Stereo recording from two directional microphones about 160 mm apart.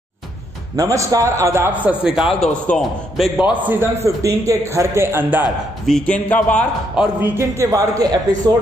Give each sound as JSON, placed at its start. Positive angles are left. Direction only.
{"t": 0.7, "sound": "a man's voice", "side_deg": -20}
{"t": 3.6, "sound": "a man's voice", "side_deg": -15}
{"t": 5.9, "sound": "a man's voice", "side_deg": 5}
{"t": 7.0, "sound": "a man's voice", "side_deg": -10}